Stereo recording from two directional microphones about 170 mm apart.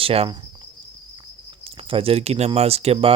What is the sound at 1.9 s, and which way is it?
Speech, 35° right (ahead or behind).